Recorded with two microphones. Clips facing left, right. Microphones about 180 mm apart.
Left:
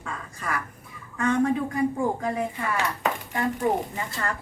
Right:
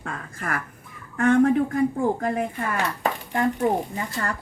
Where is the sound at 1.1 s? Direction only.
55° right (ahead or behind).